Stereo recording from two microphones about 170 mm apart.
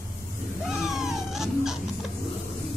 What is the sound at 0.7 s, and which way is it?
Cat, centre (ahead or behind).